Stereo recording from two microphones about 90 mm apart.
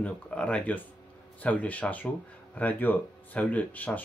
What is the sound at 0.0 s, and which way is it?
Speech, 15° left (ahead or behind).